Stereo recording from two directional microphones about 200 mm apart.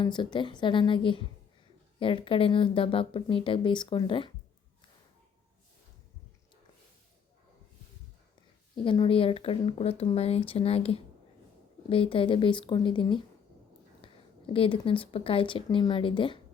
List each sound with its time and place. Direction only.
0.0 s speech: 25° left (ahead or behind)
8.7 s speech: 25° left (ahead or behind)